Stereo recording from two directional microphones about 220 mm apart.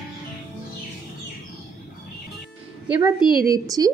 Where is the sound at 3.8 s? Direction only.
20° right (ahead or behind).